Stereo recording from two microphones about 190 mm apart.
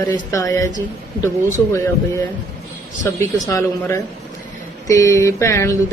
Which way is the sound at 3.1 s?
15° left (ahead or behind).